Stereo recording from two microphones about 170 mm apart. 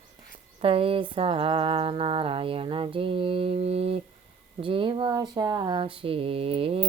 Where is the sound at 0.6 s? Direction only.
35° right (ahead or behind).